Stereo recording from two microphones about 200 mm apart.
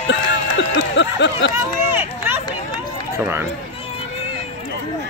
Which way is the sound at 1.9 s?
10° right (ahead or behind).